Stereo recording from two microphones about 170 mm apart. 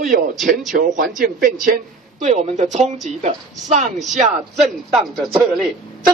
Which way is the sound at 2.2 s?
40° right (ahead or behind).